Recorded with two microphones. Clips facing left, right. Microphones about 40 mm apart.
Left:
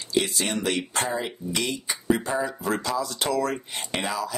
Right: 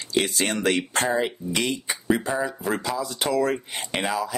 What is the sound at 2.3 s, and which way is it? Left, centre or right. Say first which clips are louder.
Speech: right 1 dB; centre.